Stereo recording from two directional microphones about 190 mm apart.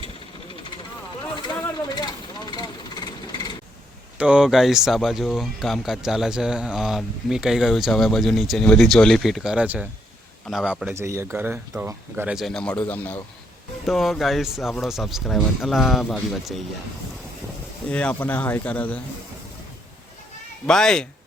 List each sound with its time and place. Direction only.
1.4 s vehicle: 20° left (ahead or behind)
4.2 s speech: 5° right (ahead or behind)
17.8 s speech: 5° left (ahead or behind)
20.7 s speech: 5° left (ahead or behind)